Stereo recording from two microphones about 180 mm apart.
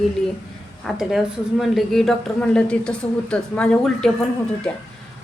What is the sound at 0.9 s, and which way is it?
A woman's voice, 5° right (ahead or behind).